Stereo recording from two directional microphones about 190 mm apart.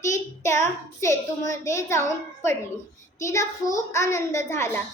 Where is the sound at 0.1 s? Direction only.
15° left (ahead or behind).